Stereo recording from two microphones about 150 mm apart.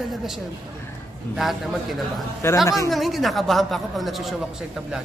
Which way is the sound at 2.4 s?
15° left (ahead or behind).